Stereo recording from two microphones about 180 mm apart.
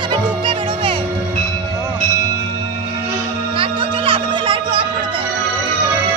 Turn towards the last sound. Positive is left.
turn(degrees=-30)  # may be behind; listen again after turning